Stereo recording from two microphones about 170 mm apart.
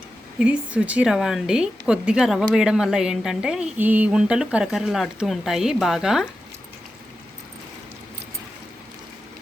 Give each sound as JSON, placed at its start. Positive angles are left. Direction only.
{"t": 0.3, "sound": "speech", "side_deg": -5}